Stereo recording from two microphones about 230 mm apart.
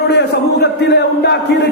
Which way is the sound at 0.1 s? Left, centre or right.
Left.